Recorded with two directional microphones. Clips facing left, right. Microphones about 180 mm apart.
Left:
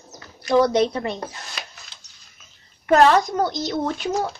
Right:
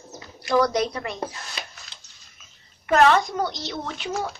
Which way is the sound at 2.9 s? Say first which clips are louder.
Left 3 dB; 40° left (ahead or behind).